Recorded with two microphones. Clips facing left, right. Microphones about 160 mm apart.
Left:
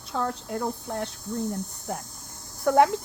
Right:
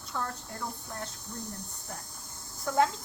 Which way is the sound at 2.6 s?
65° left (ahead or behind).